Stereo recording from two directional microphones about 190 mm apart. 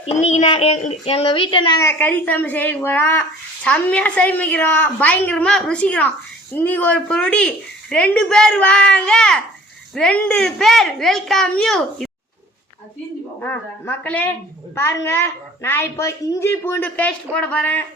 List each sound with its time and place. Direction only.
0.0 s a child's voice: 35° left (ahead or behind)
1.8 s a woman's voice: 10° left (ahead or behind)
13.4 s speech: 10° left (ahead or behind)